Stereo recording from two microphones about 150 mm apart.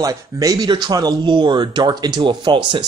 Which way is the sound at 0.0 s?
25° right (ahead or behind).